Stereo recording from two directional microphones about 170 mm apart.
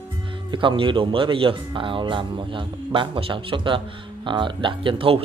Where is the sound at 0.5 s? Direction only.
30° right (ahead or behind).